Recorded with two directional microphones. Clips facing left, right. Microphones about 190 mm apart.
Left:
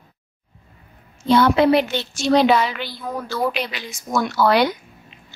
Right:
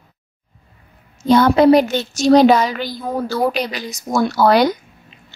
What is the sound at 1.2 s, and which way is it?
A woman's voice, 45° right (ahead or behind).